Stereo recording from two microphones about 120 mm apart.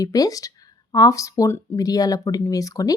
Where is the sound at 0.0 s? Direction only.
30° left (ahead or behind).